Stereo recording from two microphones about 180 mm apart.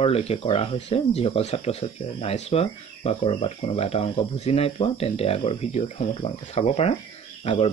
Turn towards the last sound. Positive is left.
turn(degrees=35)  # may be behind; listen again after turning